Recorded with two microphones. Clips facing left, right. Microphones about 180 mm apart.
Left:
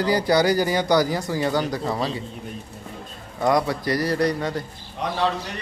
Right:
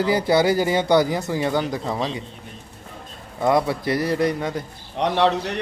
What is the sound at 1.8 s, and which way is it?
Speech, centre (ahead or behind).